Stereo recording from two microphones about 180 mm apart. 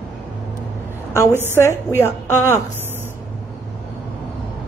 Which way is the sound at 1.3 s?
10° right (ahead or behind).